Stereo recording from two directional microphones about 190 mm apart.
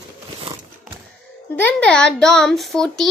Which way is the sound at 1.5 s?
5° left (ahead or behind).